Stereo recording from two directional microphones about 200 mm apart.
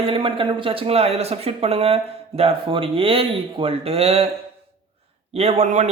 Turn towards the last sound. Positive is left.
turn(degrees=-35)  # may be behind; listen again after turning